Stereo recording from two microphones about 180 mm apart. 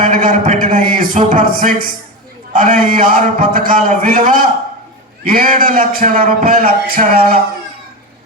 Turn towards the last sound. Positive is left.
turn(degrees=-50)  # may be behind; listen again after turning